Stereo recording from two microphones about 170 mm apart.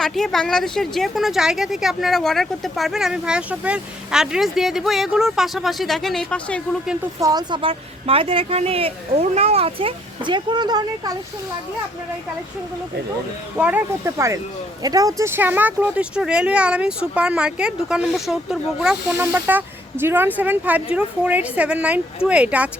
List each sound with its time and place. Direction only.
0.0 s a woman's voice: centre (ahead or behind)
7.2 s speech: 25° right (ahead or behind)
13.6 s a woman's voice: 10° right (ahead or behind)